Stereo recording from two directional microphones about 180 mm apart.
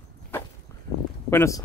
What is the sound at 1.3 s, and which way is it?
Speech, 15° left (ahead or behind).